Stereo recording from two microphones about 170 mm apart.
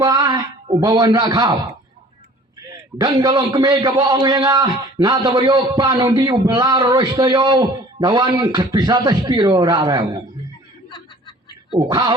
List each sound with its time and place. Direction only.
0.0 s speech: 25° right (ahead or behind)
3.0 s a man's voice: 25° right (ahead or behind)
10.8 s snicker: 30° left (ahead or behind)
11.8 s a man's voice: 25° right (ahead or behind)